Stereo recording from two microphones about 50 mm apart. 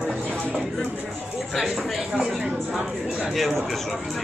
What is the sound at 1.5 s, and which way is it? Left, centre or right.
Speech, centre.